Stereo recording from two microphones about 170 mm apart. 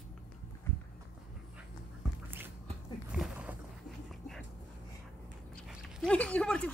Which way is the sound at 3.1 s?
5° right (ahead or behind).